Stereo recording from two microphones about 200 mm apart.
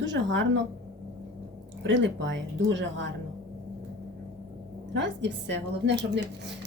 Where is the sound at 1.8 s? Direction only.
65° right (ahead or behind).